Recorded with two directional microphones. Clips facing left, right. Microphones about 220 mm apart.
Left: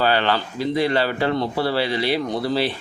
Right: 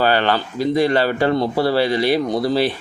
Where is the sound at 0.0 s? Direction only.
45° right (ahead or behind).